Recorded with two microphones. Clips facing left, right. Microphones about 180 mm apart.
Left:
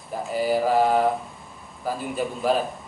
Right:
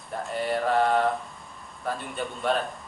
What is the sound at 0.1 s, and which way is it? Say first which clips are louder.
Speech: left 5 dB; 5° left (ahead or behind).